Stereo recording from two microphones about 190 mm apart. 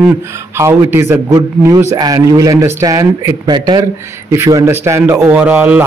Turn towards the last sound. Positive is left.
turn(degrees=-10)  # may be behind; listen again after turning